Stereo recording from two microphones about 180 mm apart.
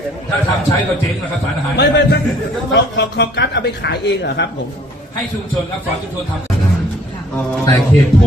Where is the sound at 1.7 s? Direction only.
70° left (ahead or behind).